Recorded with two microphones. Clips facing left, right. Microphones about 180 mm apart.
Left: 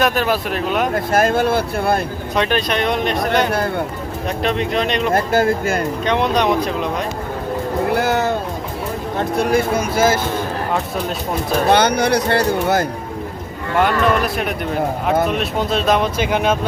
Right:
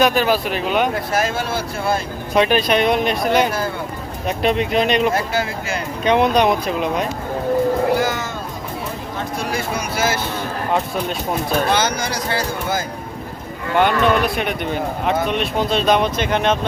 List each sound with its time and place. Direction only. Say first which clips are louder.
0.0 s speech: right 1 dB; centre (ahead or behind)
0.9 s speech: left 5 dB; 50° left (ahead or behind)
2.3 s speech: right 3 dB; 5° right (ahead or behind)
5.1 s speech: left 6 dB; 50° left (ahead or behind)
6.1 s speech: right 3 dB; 10° right (ahead or behind)
7.9 s cat: left 4 dB; 60° left (ahead or behind)
9.1 s speech: left 8 dB; 55° left (ahead or behind)
11.7 s speech: left 6 dB; 60° left (ahead or behind)
13.7 s speech: even; centre (ahead or behind)